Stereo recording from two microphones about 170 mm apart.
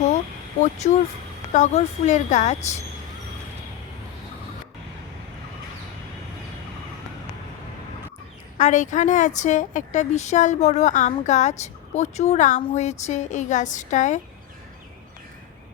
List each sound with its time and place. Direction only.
0.8 s a woman's voice: 45° left (ahead or behind)
8.5 s a woman's voice: 45° left (ahead or behind)